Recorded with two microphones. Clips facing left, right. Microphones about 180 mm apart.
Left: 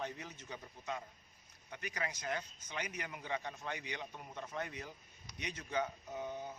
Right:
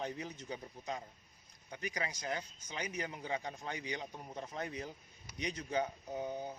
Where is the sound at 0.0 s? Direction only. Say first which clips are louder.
Right 3 dB; 35° right (ahead or behind).